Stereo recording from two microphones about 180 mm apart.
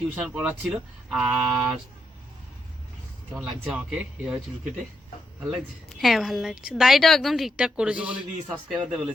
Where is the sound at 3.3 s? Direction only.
5° right (ahead or behind).